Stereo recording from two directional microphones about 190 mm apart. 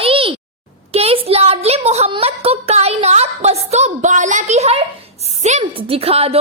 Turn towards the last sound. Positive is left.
turn(degrees=-30)  # may be behind; listen again after turning